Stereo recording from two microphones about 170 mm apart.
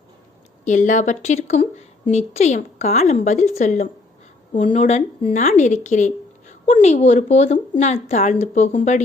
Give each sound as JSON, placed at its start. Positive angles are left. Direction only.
{"t": 0.6, "sound": "a woman's voice", "side_deg": 45}